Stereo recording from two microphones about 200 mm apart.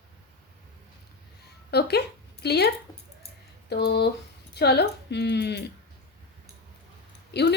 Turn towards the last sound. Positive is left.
turn(degrees=55)  # may be behind; listen again after turning